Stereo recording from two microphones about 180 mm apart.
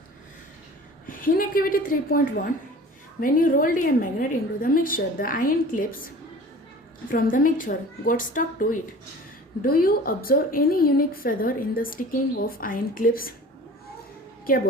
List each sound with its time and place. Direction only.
1.0 s a woman's voice: 50° left (ahead or behind)
7.1 s a woman's voice: 50° left (ahead or behind)